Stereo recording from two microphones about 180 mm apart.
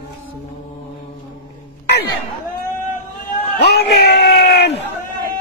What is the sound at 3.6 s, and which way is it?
Crowd, 65° left (ahead or behind).